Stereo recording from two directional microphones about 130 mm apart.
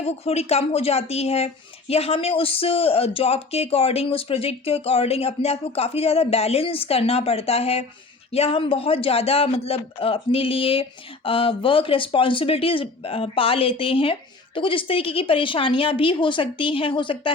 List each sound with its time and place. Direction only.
0.0 s speech: 50° left (ahead or behind)